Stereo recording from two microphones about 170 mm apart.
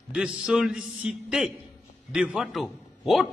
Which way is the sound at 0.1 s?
5° right (ahead or behind).